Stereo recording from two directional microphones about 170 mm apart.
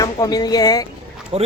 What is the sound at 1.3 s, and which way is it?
Speech, 35° right (ahead or behind).